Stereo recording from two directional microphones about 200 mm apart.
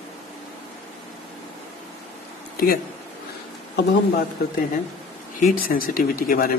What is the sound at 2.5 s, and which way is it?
Speech, 45° left (ahead or behind).